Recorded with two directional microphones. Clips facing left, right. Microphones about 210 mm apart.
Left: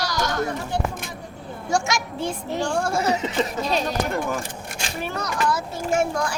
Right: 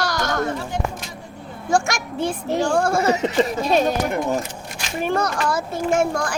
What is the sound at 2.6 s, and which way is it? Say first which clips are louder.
A child's voice: right 5 dB; 50° right (ahead or behind).